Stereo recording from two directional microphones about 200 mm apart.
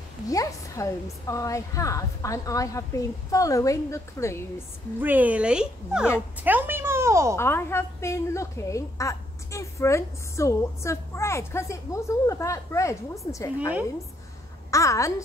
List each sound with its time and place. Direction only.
0.3 s a woman's voice: 15° left (ahead or behind)
5.0 s a child's voice: 10° right (ahead or behind)
7.3 s a woman's voice: 10° left (ahead or behind)
14.7 s a woman's voice: 15° left (ahead or behind)